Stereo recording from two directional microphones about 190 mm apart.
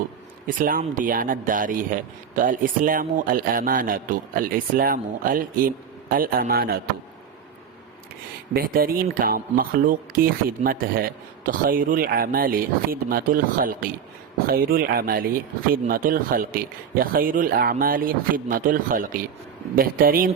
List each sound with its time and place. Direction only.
0.4 s a man's voice: 45° right (ahead or behind)
8.5 s a man's voice: 50° right (ahead or behind)